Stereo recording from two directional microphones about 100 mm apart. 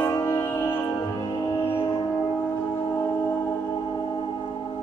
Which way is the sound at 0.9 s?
35° left (ahead or behind).